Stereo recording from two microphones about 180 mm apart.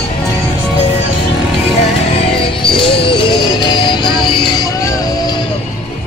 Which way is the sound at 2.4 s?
25° left (ahead or behind).